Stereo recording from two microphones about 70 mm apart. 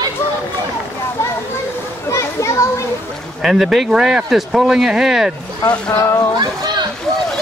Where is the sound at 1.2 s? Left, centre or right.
Left.